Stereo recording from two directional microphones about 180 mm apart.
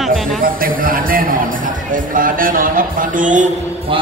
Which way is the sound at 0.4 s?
50° right (ahead or behind).